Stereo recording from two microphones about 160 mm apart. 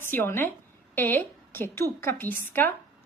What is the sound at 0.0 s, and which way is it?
Speech, 15° left (ahead or behind).